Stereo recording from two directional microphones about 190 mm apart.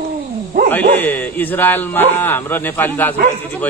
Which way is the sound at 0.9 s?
10° left (ahead or behind).